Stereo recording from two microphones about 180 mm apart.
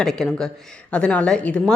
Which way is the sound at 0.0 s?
5° left (ahead or behind).